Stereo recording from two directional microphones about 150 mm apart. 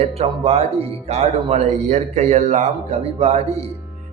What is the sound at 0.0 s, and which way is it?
Speech, 45° right (ahead or behind).